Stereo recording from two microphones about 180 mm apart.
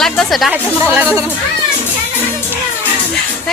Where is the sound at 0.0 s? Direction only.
Centre (ahead or behind).